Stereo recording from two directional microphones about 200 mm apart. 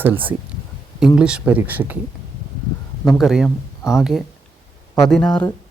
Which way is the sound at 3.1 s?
Centre (ahead or behind).